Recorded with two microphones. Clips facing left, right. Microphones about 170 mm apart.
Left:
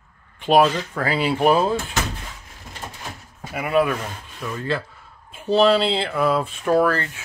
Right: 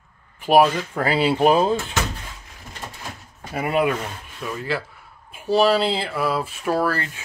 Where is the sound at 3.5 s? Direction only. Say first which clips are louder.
Left 2 dB; 30° right (ahead or behind).